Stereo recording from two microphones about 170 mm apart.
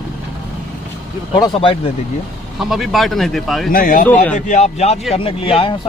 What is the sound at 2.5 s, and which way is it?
Speech, centre (ahead or behind).